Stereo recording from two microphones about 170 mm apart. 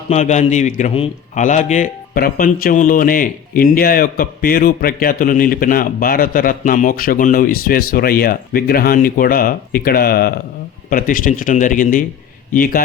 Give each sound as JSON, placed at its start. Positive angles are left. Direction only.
{"t": 0.1, "sound": "a man's voice", "side_deg": 45}